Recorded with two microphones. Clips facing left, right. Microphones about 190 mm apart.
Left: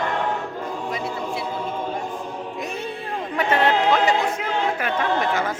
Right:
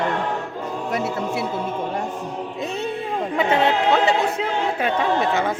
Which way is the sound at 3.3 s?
20° right (ahead or behind).